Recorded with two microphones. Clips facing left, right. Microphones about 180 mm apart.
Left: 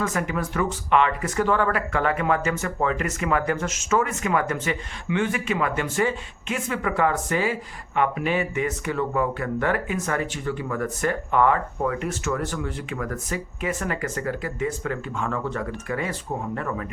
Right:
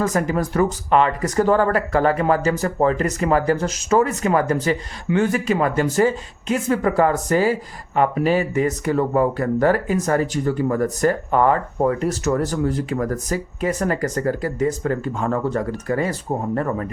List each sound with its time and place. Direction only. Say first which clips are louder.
0.0 s speech: right 6 dB; 40° right (ahead or behind)